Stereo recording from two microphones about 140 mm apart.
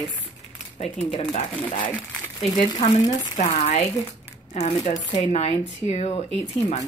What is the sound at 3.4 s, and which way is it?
Speech, 55° left (ahead or behind).